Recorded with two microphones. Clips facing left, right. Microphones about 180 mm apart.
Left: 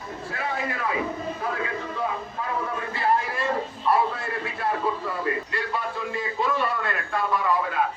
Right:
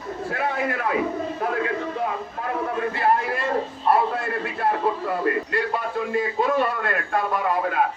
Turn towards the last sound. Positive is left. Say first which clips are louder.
# right 2 dB
turn(degrees=-55)  # may be behind; listen again after turning